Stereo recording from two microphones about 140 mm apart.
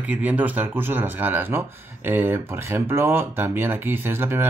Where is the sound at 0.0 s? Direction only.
10° right (ahead or behind).